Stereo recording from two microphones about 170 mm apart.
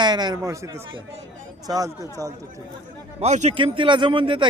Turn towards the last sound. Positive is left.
turn(degrees=-30)  # may be behind; listen again after turning